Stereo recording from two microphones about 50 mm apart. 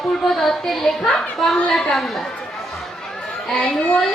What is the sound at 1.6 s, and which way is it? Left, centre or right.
Speech, centre.